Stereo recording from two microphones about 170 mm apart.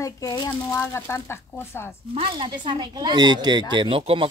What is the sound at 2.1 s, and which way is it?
Speech, 30° right (ahead or behind).